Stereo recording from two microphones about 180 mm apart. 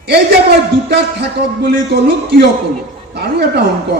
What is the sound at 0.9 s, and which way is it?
Speech, 65° right (ahead or behind).